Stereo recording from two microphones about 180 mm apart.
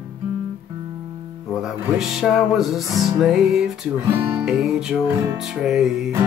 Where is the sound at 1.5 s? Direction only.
Centre (ahead or behind).